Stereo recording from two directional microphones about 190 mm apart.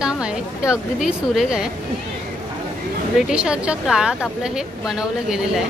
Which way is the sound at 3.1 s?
5° right (ahead or behind).